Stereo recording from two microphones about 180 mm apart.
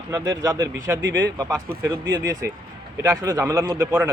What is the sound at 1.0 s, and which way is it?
Speech, 85° right.